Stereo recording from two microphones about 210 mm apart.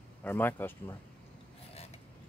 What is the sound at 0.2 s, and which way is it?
Speech, 10° left (ahead or behind).